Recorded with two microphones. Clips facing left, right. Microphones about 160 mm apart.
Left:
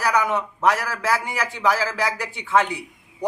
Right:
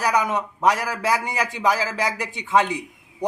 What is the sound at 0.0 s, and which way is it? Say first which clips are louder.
A man's voice: even; 15° right (ahead or behind).